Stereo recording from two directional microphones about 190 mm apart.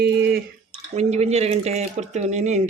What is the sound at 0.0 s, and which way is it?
Drip, 55° right (ahead or behind).